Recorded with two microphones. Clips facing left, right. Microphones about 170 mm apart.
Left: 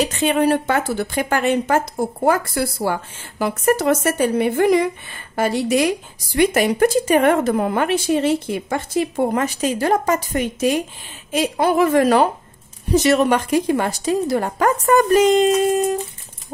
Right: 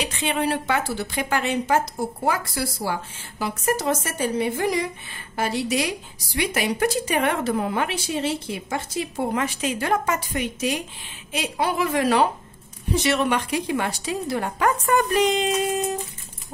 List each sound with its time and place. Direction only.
0.0 s a woman's voice: 45° left (ahead or behind)